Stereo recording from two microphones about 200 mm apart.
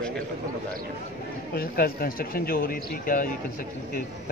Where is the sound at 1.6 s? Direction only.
50° left (ahead or behind).